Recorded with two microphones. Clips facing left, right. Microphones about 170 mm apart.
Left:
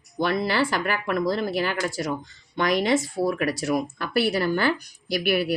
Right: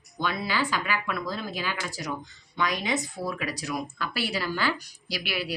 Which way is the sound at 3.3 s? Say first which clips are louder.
Left 8 dB; 60° left (ahead or behind).